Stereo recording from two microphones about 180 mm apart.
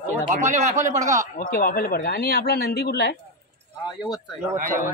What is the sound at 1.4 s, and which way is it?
Speech, 55° left (ahead or behind).